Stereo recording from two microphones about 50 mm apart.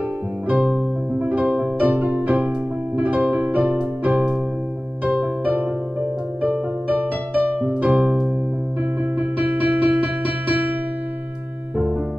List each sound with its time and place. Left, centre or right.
0.6 s music: right
1.8 s music: right
11.7 s music: right